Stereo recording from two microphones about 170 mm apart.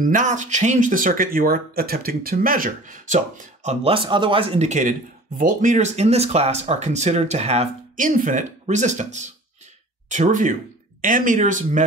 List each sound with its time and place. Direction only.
0.0 s speech: 50° right (ahead or behind)
3.8 s speech: 30° right (ahead or behind)
8.0 s speech: 50° right (ahead or behind)